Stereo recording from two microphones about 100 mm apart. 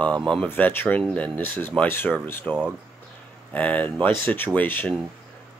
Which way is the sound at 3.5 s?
15° left (ahead or behind).